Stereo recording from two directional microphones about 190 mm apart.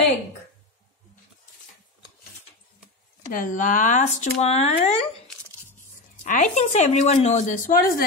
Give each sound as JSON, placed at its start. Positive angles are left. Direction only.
{"t": 3.3, "sound": "a woman's voice", "side_deg": 40}
{"t": 6.2, "sound": "a woman's voice", "side_deg": 40}